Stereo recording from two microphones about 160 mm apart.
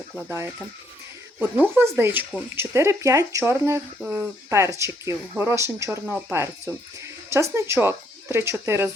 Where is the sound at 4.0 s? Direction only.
Centre (ahead or behind).